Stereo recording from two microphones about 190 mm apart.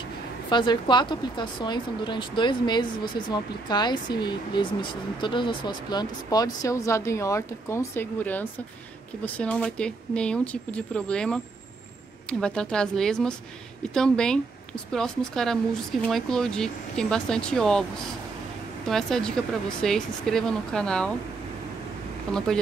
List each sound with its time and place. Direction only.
0.5 s speech: 25° left (ahead or behind); by 17.8 s 5° left (ahead or behind)
18.9 s speech: centre (ahead or behind)